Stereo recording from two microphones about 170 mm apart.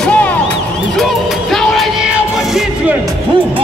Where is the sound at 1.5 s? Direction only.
Centre (ahead or behind).